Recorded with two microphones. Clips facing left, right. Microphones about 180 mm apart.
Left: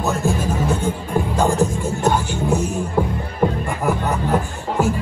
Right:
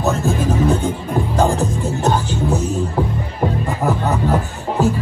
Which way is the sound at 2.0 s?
15° left (ahead or behind).